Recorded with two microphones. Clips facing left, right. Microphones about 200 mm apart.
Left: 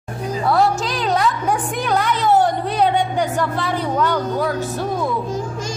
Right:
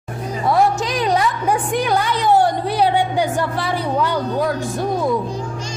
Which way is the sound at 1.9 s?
15° right (ahead or behind).